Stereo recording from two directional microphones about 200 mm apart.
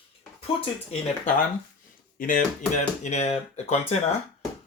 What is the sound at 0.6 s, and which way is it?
Speech, 30° left (ahead or behind).